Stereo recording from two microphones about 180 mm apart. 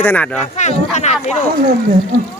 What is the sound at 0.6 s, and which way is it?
Speech, 40° left (ahead or behind).